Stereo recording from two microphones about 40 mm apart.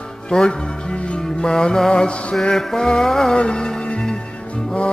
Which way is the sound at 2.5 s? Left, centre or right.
Centre.